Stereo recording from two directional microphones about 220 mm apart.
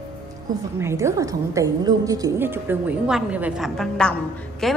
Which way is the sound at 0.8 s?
15° right (ahead or behind).